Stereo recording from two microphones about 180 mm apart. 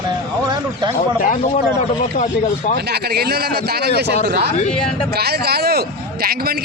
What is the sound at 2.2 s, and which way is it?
Speech, 45° left (ahead or behind).